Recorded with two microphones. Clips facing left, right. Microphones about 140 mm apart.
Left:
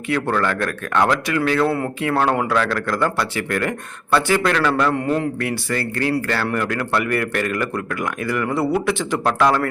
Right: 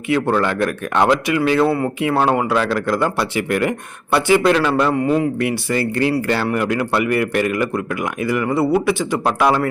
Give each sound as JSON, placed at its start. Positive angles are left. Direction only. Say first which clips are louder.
{"t": 0.1, "sound": "speech", "louder": "right 3 dB", "side_deg": -15}
{"t": 1.6, "sound": "speech", "louder": "right 3 dB", "side_deg": -5}
{"t": 4.9, "sound": "speech", "louder": "right 4 dB", "side_deg": -5}